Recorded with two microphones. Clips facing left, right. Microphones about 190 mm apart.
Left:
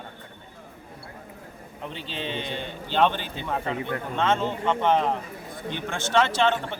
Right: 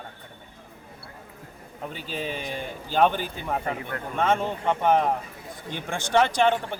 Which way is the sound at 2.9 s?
10° right (ahead or behind).